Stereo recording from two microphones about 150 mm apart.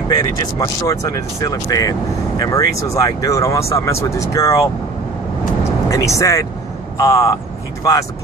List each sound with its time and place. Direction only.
0.1 s speech: 25° left (ahead or behind)
5.6 s vehicle: 20° left (ahead or behind)
7.0 s speech: 20° left (ahead or behind)